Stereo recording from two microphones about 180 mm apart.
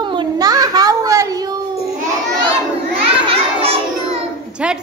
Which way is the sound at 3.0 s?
30° right (ahead or behind).